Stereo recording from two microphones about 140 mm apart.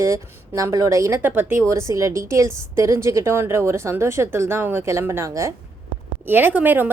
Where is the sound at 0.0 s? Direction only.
20° right (ahead or behind).